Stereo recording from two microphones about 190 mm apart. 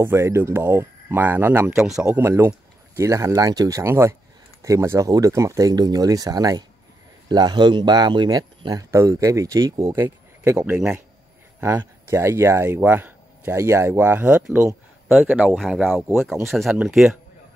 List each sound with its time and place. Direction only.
0.0 s speech: 15° right (ahead or behind)